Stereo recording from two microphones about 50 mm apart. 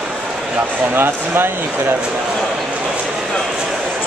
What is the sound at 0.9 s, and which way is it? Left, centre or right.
Speech, right.